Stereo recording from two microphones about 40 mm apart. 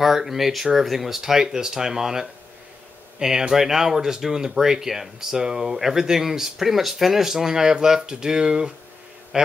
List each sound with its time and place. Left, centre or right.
0.0 s speech: centre